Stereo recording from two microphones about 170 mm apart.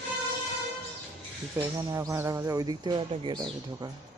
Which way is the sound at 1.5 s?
20° right (ahead or behind).